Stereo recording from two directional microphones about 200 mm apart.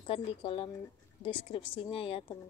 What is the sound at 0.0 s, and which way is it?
Speech, 25° left (ahead or behind).